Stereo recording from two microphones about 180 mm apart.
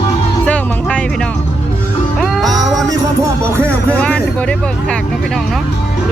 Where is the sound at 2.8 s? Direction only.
15° right (ahead or behind).